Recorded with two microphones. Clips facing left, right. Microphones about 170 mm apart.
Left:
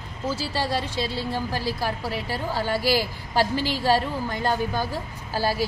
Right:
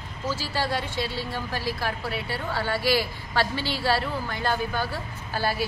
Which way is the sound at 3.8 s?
40° left (ahead or behind).